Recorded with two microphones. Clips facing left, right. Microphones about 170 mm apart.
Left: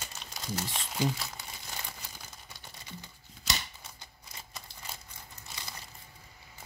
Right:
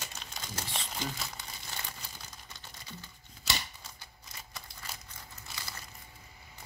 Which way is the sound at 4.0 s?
20° left (ahead or behind).